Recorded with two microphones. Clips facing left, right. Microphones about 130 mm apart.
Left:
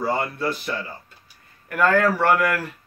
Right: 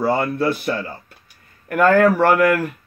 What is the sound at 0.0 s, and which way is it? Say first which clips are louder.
A man's voice: right 5 dB; 55° right (ahead or behind).